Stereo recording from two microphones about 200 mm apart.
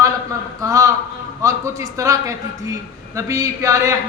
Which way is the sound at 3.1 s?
15° right (ahead or behind).